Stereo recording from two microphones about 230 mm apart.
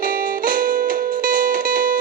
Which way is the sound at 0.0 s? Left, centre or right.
Right.